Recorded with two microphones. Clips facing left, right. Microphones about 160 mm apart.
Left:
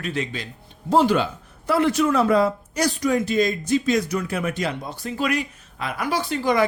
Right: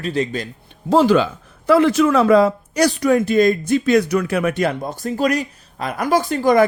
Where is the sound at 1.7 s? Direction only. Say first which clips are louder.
Right 6 dB; 90° right.